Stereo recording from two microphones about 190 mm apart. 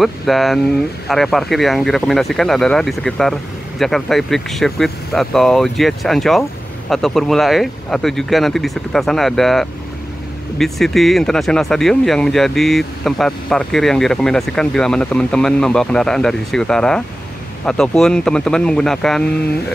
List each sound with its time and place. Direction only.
0.0 s speech: centre (ahead or behind)